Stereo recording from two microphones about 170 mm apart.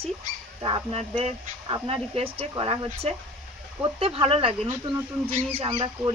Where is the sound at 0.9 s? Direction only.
40° right (ahead or behind).